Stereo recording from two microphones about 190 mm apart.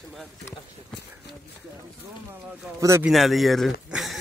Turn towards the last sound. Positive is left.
turn(degrees=0)  # may be behind; listen again after turning